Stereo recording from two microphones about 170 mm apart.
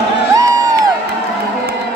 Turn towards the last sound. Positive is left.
turn(degrees=-20)  # may be behind; listen again after turning